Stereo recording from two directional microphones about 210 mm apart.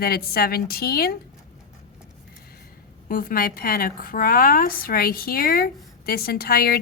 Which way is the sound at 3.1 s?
45° left (ahead or behind).